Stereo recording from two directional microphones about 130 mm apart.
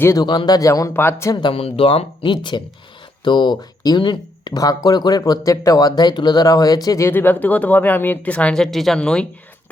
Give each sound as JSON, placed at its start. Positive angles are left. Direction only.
{"t": 0.0, "sound": "speech", "side_deg": 25}
{"t": 1.4, "sound": "speech", "side_deg": 45}